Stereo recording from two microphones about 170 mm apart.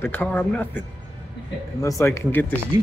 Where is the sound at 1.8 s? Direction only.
15° left (ahead or behind).